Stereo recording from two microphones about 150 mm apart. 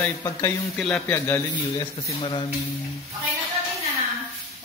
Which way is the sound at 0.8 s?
10° left (ahead or behind).